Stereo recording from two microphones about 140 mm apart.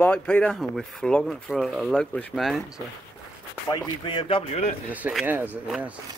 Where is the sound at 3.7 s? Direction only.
30° left (ahead or behind).